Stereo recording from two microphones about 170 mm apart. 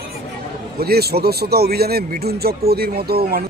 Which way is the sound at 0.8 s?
65° right (ahead or behind).